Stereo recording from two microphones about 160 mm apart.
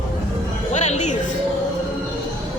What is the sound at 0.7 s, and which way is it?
Music, 45° left (ahead or behind).